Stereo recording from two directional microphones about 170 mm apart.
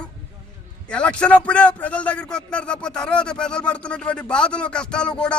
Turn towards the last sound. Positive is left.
turn(degrees=5)  # may be behind; listen again after turning